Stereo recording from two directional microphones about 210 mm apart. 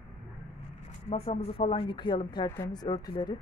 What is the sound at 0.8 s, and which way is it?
Speech, 30° left (ahead or behind).